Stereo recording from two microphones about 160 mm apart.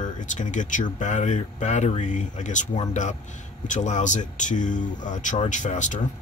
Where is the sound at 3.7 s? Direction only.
50° left (ahead or behind).